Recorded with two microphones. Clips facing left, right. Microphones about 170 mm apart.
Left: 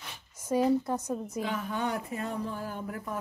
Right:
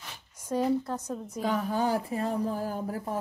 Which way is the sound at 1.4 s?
40° right (ahead or behind).